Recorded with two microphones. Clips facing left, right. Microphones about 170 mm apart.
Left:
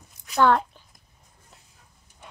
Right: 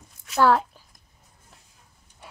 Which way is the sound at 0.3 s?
5° right (ahead or behind).